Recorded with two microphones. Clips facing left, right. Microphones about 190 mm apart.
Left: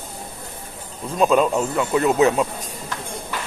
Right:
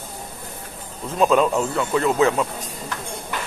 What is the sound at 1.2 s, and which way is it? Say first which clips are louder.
A man's voice: even; 15° left (ahead or behind).